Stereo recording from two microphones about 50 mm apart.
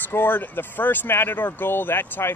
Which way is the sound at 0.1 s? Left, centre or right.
Left.